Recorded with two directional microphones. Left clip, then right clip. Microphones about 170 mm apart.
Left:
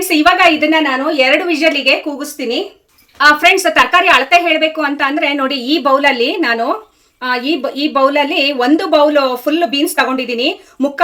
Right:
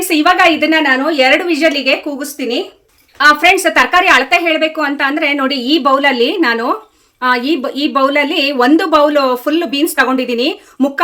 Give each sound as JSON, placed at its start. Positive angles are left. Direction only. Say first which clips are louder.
{"t": 0.1, "sound": "speech", "louder": "even", "side_deg": -20}